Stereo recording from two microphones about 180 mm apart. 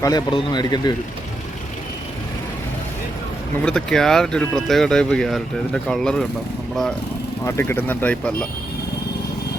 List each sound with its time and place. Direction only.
0.0 s a man's voice: 20° left (ahead or behind)
3.6 s speech: 5° left (ahead or behind)
7.4 s speech: 15° left (ahead or behind)